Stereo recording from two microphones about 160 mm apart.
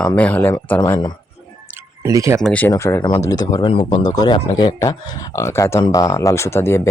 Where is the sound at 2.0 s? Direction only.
20° right (ahead or behind).